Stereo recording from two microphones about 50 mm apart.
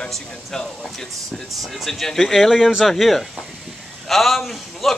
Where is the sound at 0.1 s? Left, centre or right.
Centre.